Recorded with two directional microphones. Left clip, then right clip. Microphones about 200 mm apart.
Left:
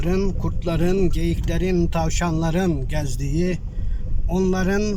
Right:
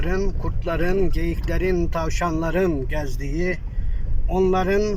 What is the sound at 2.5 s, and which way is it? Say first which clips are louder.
Speech: right 4 dB; 15° left (ahead or behind).